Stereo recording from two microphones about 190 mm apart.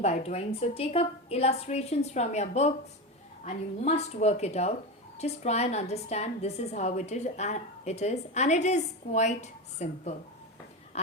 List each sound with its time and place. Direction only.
0.0 s a woman's voice: 35° left (ahead or behind)